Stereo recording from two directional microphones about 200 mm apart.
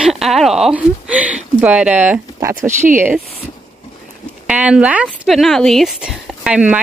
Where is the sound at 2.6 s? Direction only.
35° right (ahead or behind).